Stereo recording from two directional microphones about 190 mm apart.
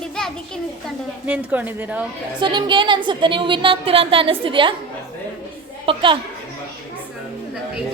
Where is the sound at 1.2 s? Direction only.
10° right (ahead or behind).